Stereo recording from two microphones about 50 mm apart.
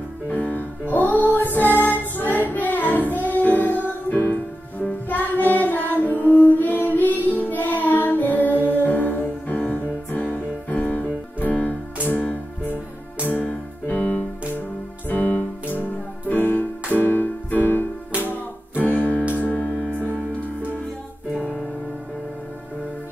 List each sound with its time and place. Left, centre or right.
0.3 s music: left
10.7 s music: left